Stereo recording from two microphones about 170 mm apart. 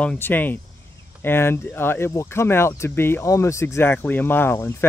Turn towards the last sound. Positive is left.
turn(degrees=15)  # may be behind; listen again after turning